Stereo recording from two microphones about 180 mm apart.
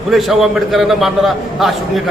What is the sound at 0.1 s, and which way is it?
A man's voice, centre (ahead or behind).